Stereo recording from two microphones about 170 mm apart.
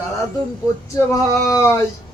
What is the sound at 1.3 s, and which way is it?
Speech, 15° left (ahead or behind).